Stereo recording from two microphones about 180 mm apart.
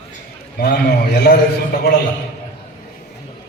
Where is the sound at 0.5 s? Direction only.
60° left (ahead or behind).